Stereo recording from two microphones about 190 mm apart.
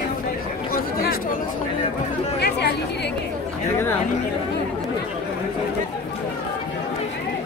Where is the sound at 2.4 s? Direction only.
60° left (ahead or behind).